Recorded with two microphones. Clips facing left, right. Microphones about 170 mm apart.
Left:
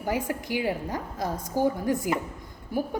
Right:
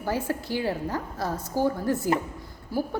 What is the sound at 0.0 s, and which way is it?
A woman's voice, 15° left (ahead or behind).